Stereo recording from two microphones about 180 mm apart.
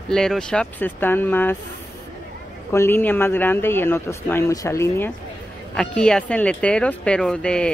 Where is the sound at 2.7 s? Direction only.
15° left (ahead or behind).